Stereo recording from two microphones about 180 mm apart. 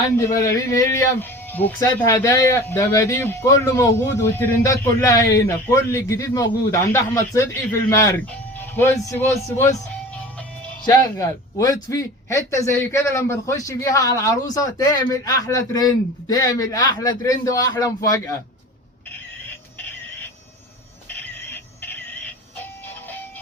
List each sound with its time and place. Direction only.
0.3 s speech: 15° left (ahead or behind)
10.8 s a man's voice: 20° left (ahead or behind)
21.2 s squeal: 10° left (ahead or behind)